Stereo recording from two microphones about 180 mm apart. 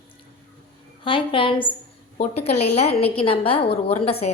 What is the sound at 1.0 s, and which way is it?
Speech, 30° left (ahead or behind).